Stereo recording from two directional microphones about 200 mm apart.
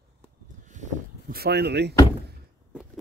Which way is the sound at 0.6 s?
40° right (ahead or behind).